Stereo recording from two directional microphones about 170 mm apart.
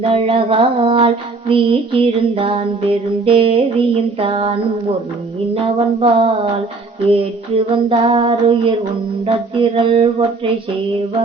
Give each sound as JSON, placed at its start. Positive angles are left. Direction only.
{"t": 0.0, "sound": "child singing", "side_deg": -30}
{"t": 5.6, "sound": "child singing", "side_deg": -35}